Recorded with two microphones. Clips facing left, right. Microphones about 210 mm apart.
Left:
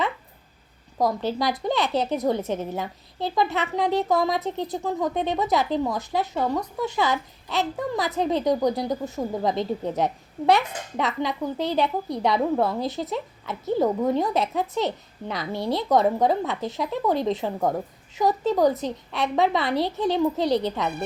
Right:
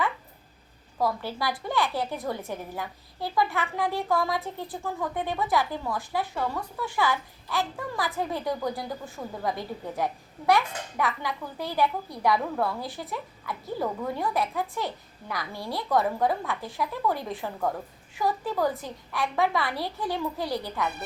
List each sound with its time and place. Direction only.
1.2 s a woman's voice: 20° left (ahead or behind)